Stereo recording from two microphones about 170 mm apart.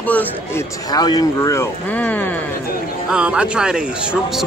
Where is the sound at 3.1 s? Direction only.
5° right (ahead or behind).